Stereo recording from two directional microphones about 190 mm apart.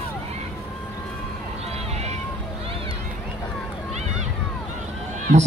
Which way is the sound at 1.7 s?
35° right (ahead or behind).